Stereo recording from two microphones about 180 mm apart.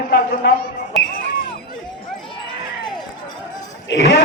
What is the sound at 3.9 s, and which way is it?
Speech, 80° left.